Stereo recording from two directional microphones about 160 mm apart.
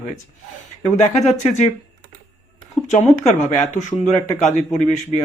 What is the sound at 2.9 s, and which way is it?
A man's voice, 50° left (ahead or behind).